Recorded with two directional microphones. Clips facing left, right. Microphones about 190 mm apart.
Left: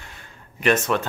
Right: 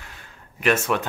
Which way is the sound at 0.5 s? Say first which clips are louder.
Left 1 dB; 5° right (ahead or behind).